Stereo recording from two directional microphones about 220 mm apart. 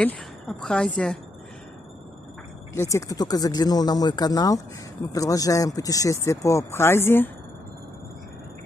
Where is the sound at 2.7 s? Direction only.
15° left (ahead or behind).